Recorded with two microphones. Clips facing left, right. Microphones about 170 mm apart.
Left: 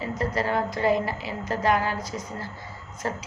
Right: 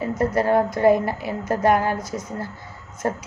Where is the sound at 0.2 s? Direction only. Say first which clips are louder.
Right 7 dB; 50° right (ahead or behind).